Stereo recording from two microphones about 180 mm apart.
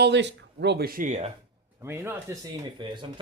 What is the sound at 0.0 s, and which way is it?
Speech, 75° right (ahead or behind).